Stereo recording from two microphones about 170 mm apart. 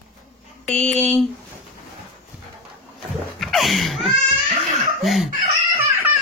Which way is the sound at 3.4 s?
Centre (ahead or behind).